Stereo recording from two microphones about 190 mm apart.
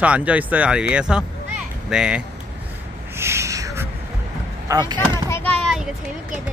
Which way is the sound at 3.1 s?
15° right (ahead or behind).